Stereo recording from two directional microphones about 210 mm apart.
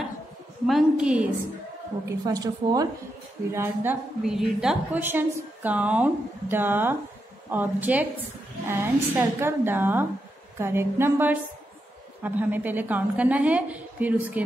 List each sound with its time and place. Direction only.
0.7 s a woman's voice: centre (ahead or behind)
2.0 s a woman's voice: 15° right (ahead or behind)